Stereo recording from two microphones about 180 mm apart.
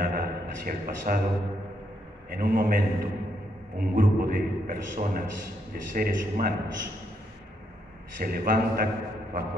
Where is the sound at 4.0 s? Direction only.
50° right (ahead or behind).